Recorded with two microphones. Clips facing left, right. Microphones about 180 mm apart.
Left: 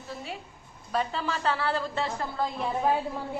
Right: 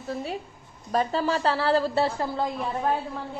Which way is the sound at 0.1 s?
40° right (ahead or behind).